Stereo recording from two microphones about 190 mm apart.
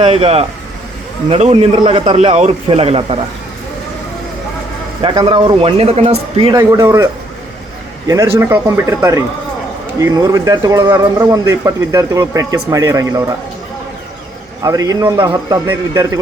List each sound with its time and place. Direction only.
0.0 s a man's voice: 30° right (ahead or behind)
5.0 s a man's voice: 25° right (ahead or behind)
6.5 s a man's voice: 20° right (ahead or behind)
14.6 s a man's voice: 20° right (ahead or behind)